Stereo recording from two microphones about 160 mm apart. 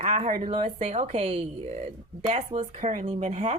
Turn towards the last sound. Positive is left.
turn(degrees=-45)  # may be behind; listen again after turning